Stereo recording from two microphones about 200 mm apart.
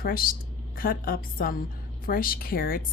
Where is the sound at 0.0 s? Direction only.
45° left (ahead or behind).